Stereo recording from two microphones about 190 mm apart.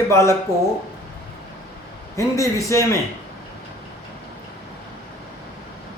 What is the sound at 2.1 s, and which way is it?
Speech, 15° left (ahead or behind).